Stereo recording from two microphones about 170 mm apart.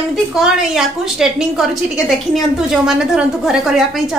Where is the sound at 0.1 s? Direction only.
Centre (ahead or behind).